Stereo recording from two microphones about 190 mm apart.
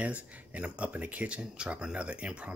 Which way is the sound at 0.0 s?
5° right (ahead or behind).